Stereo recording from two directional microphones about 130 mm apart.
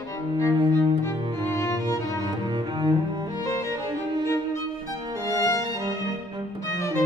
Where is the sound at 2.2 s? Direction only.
30° right (ahead or behind).